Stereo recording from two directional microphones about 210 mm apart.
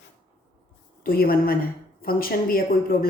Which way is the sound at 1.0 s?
45° left (ahead or behind).